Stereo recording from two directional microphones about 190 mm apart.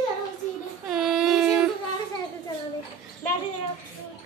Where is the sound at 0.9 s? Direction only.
Centre (ahead or behind).